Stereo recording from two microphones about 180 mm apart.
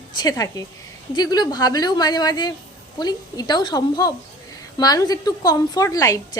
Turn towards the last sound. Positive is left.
turn(degrees=20)  # may be behind; listen again after turning